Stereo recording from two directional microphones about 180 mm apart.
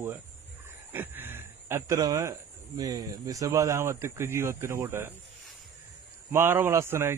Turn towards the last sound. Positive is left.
turn(degrees=-15)  # may be behind; listen again after turning